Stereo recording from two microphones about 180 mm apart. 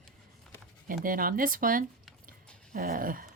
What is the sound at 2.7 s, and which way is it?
Dog, 50° right (ahead or behind).